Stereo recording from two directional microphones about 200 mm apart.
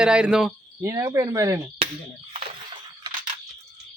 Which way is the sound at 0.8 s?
15° right (ahead or behind).